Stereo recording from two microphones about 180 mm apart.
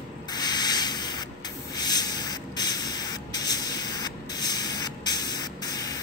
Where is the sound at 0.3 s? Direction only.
25° left (ahead or behind).